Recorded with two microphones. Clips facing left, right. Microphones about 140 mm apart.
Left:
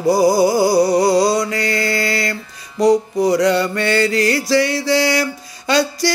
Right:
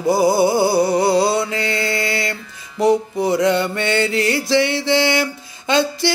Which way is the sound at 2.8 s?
25° right (ahead or behind).